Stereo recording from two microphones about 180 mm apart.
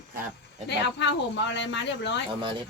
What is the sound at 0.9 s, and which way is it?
Speech, 85° left.